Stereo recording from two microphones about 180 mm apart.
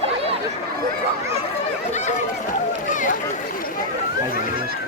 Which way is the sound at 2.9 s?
45° left (ahead or behind).